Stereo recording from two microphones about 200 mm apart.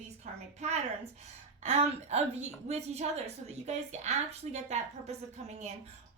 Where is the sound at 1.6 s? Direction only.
30° right (ahead or behind).